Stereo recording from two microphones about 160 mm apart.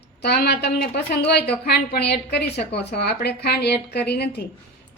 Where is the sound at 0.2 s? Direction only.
90° left.